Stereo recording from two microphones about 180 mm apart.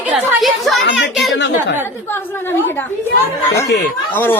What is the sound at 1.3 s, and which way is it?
Speech, 80° left.